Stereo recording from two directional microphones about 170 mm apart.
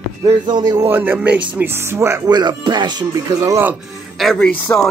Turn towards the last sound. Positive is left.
turn(degrees=5)  # may be behind; listen again after turning